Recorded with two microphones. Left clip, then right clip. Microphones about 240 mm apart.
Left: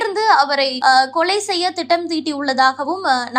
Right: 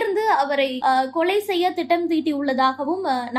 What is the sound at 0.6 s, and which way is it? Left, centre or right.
Speech, left.